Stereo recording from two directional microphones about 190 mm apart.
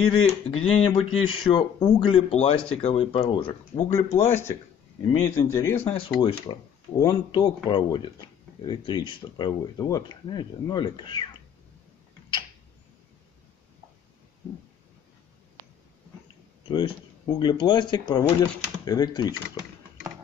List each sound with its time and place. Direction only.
0.0 s speech: 30° left (ahead or behind)
4.2 s speech: 15° left (ahead or behind)
5.9 s speech: 25° left (ahead or behind)
16.6 s speech: 25° left (ahead or behind)